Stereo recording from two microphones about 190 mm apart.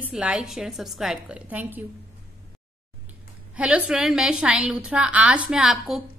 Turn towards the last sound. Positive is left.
turn(degrees=0)  # may be behind; listen again after turning